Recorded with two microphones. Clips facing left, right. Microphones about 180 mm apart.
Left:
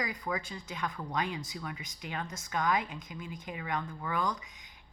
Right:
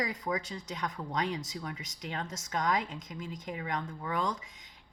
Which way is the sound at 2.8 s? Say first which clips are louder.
Right 1 dB; 25° right (ahead or behind).